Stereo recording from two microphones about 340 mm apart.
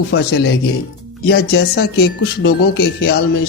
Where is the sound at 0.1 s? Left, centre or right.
Left.